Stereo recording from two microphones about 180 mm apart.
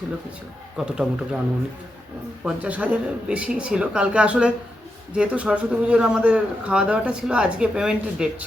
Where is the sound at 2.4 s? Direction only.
5° right (ahead or behind).